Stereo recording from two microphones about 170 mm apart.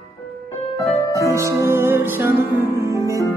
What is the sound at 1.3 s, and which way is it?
Music, 15° right (ahead or behind).